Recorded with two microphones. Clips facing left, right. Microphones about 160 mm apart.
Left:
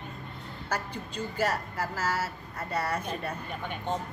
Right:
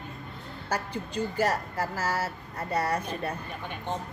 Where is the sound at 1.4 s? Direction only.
40° right (ahead or behind).